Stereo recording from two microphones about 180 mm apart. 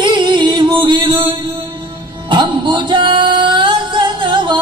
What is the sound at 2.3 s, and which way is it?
Singing, 25° right (ahead or behind).